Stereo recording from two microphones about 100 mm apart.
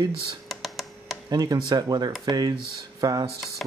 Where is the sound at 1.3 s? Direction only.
40° right (ahead or behind).